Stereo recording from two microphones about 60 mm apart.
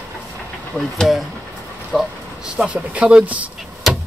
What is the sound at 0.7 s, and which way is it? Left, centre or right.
Speech, centre.